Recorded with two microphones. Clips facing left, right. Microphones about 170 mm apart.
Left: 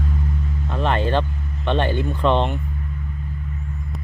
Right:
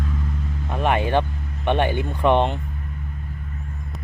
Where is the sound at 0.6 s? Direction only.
15° right (ahead or behind).